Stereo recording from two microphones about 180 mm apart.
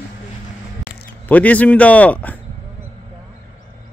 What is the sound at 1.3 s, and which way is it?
Speech, 10° left (ahead or behind).